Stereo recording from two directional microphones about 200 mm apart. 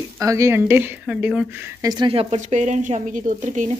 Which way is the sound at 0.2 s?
15° right (ahead or behind).